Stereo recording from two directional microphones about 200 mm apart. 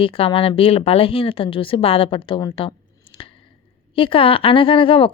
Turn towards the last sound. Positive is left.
turn(degrees=25)  # may be behind; listen again after turning